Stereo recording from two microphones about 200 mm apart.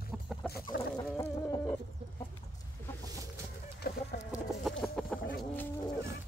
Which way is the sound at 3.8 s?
50° left (ahead or behind).